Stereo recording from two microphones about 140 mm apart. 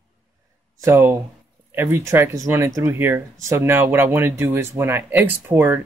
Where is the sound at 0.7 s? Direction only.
20° right (ahead or behind).